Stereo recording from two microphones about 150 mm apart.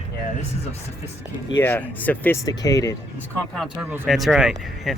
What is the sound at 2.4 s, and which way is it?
Speech, 25° left (ahead or behind).